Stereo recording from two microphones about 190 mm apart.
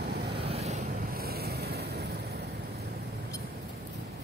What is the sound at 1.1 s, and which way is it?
Vehicle, 55° right (ahead or behind).